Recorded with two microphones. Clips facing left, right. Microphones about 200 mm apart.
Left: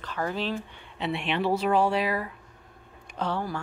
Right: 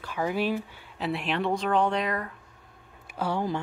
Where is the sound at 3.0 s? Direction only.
10° right (ahead or behind).